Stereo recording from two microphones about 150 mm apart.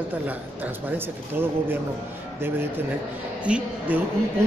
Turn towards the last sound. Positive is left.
turn(degrees=-10)  # may be behind; listen again after turning